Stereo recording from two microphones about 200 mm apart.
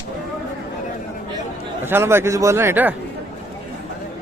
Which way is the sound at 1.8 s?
10° right (ahead or behind).